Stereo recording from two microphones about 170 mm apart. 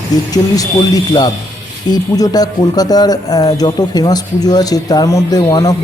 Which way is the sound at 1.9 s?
20° left (ahead or behind).